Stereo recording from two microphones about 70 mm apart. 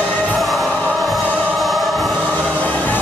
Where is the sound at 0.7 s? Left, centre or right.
Centre.